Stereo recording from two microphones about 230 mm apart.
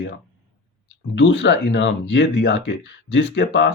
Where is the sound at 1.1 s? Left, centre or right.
Left.